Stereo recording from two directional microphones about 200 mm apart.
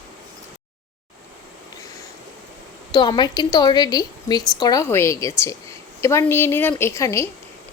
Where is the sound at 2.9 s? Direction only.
20° left (ahead or behind).